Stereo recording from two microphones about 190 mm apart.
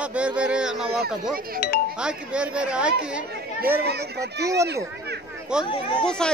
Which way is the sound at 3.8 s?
60° right (ahead or behind).